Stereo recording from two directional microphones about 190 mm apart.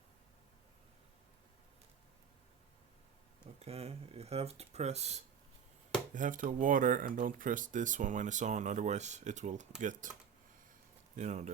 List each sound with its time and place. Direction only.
3.6 s speech: 35° right (ahead or behind)
11.2 s speech: 35° right (ahead or behind)